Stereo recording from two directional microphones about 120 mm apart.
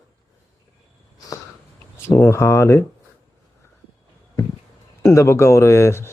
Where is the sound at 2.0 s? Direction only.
20° left (ahead or behind).